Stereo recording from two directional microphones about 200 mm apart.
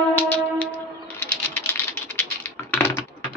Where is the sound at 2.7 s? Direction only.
10° left (ahead or behind).